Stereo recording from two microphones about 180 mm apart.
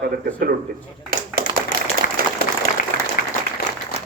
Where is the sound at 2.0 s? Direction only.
55° left (ahead or behind).